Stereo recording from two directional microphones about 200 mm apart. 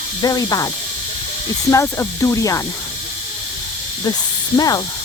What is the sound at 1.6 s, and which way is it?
Speech, 15° left (ahead or behind).